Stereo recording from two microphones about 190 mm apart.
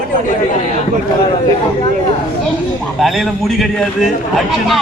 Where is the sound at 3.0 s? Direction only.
Centre (ahead or behind).